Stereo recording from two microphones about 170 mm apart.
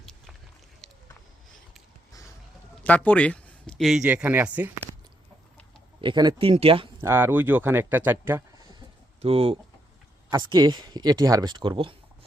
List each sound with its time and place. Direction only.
2.8 s speech: 10° left (ahead or behind); by 4.7 s 10° right (ahead or behind)
6.0 s speech: 25° right (ahead or behind)
7.0 s speech: 15° right (ahead or behind)
9.2 s speech: 35° right (ahead or behind)